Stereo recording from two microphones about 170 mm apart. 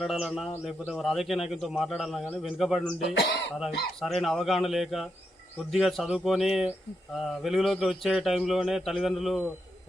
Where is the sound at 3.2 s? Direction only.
85° left.